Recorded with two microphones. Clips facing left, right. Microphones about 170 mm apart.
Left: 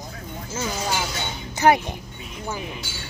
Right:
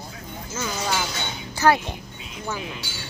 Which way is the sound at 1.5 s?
20° left (ahead or behind).